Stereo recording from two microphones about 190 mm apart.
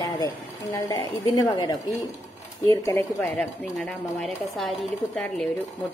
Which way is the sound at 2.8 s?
15° left (ahead or behind).